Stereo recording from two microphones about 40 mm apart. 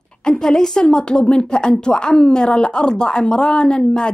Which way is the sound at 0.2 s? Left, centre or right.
Centre.